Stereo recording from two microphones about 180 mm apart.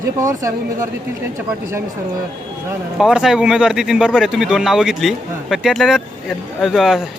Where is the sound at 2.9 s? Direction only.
Centre (ahead or behind).